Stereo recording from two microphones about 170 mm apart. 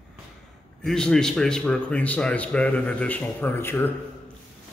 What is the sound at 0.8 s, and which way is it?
A man's voice, 5° left (ahead or behind).